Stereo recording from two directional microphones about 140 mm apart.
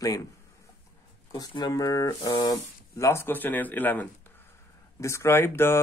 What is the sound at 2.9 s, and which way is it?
Speech, 20° left (ahead or behind).